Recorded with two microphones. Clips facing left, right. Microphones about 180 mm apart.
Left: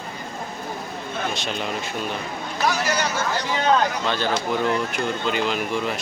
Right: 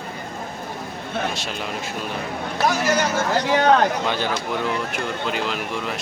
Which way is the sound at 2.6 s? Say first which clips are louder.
Right 3 dB; 50° right (ahead or behind).